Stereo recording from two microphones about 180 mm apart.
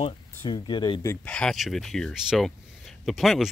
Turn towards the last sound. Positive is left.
turn(degrees=0)  # may be behind; listen again after turning